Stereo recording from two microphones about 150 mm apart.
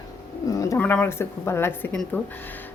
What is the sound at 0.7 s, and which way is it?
Speech, 10° left (ahead or behind).